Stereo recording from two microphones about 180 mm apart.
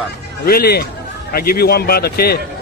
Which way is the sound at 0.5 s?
60° left (ahead or behind).